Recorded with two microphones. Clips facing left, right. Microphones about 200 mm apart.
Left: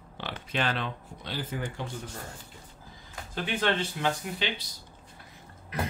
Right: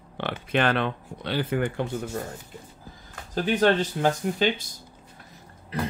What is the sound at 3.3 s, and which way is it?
Speech, 40° right (ahead or behind).